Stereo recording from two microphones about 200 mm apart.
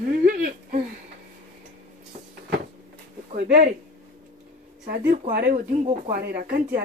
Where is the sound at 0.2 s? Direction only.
45° right (ahead or behind).